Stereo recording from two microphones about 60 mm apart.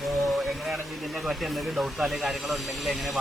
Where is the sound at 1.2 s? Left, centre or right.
Centre.